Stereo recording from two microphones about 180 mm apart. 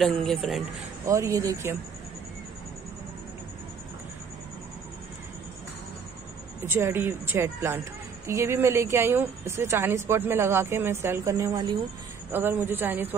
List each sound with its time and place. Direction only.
0.0 s speech: 5° left (ahead or behind)
1.0 s speech: 15° right (ahead or behind)
6.6 s speech: 15° right (ahead or behind)